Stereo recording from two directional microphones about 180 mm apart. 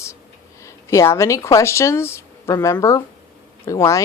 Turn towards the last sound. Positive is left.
turn(degrees=15)  # may be behind; listen again after turning